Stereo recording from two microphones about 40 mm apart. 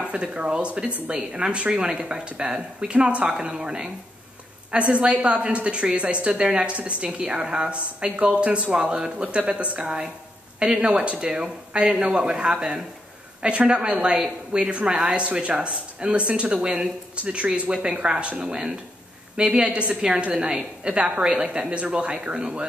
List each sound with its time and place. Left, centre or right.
0.0 s a woman's voice: right
4.6 s a woman's voice: right